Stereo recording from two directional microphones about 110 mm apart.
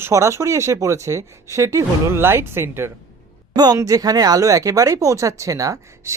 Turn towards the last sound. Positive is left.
turn(degrees=-30)  # may be behind; listen again after turning